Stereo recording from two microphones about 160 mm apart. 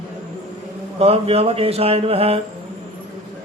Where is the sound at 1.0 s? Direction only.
40° right (ahead or behind).